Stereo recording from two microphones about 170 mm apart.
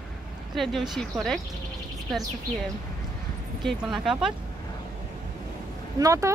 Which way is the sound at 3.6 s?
Centre (ahead or behind).